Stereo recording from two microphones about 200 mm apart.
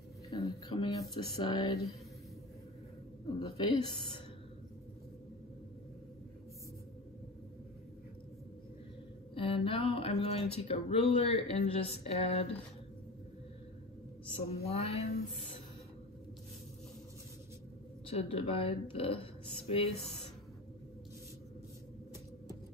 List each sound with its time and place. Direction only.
0.3 s a sound: 20° left (ahead or behind)
3.3 s speech: 25° left (ahead or behind)
9.3 s speech: 25° left (ahead or behind)
14.2 s speech: 30° left (ahead or behind)
18.0 s speech: 30° left (ahead or behind)